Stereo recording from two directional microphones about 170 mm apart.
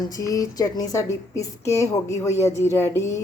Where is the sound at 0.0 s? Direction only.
20° left (ahead or behind).